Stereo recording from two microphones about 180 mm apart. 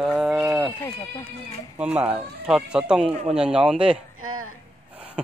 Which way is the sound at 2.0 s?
5° right (ahead or behind).